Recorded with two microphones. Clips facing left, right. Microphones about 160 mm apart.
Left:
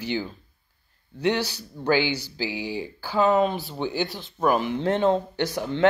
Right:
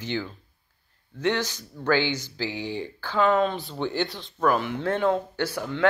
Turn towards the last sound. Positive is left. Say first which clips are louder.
# left 2 dB
turn(degrees=15)  # may be behind; listen again after turning